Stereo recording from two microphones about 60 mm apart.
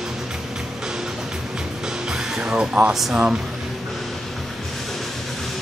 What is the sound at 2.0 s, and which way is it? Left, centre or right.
Music, centre.